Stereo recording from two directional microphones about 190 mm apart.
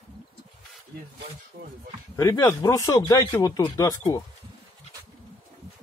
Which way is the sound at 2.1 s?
20° left (ahead or behind).